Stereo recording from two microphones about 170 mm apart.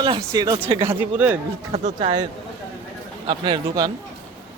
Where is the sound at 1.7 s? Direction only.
45° right (ahead or behind).